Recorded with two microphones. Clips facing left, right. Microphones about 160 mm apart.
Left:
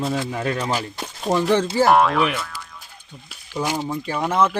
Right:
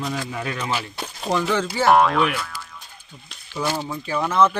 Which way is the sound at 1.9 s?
Centre (ahead or behind).